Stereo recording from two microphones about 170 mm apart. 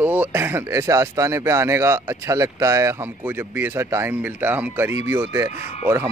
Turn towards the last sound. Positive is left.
turn(degrees=-15)  # may be behind; listen again after turning